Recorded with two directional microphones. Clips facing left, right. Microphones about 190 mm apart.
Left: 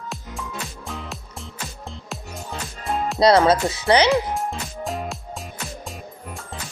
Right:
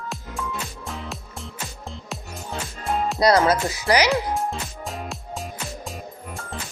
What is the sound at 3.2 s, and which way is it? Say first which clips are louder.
Speech: left 3 dB; 25° left (ahead or behind).